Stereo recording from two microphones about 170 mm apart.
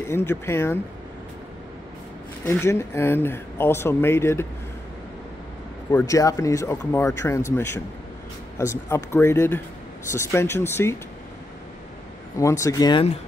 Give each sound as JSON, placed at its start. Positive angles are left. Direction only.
{"t": 0.1, "sound": "speech", "side_deg": 15}
{"t": 2.4, "sound": "speech", "side_deg": 15}
{"t": 5.9, "sound": "speech", "side_deg": 20}
{"t": 12.4, "sound": "speech", "side_deg": 20}